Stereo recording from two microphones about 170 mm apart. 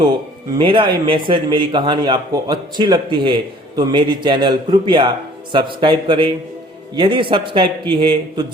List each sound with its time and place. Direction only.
0.6 s a man's voice: 30° right (ahead or behind)